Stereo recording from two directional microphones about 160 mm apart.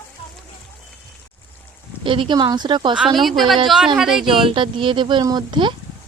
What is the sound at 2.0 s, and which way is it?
Speech, 30° right (ahead or behind).